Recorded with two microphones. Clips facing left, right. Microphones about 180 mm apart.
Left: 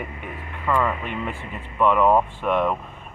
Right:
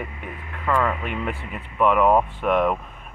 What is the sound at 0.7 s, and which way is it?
Speech, centre (ahead or behind).